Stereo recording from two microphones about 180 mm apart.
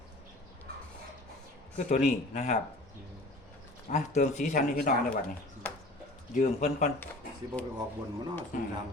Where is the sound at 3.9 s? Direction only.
40° left (ahead or behind).